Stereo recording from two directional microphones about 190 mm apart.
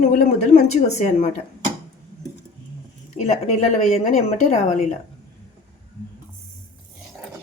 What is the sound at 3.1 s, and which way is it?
Speech, 35° left (ahead or behind).